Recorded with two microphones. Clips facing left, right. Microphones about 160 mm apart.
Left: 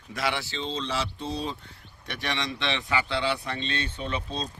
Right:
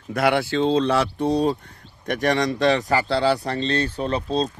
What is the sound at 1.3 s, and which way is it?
Speech, 45° right (ahead or behind).